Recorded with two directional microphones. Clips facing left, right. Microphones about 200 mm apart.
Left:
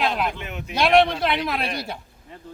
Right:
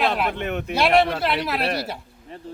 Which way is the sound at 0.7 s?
5° right (ahead or behind).